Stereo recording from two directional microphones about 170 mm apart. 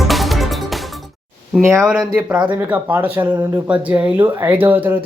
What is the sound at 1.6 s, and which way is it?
Speech, 15° right (ahead or behind).